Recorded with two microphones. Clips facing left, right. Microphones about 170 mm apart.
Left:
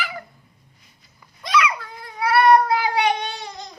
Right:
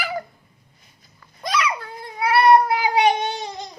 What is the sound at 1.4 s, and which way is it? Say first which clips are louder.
Babbling: left 2 dB; 35° right (ahead or behind).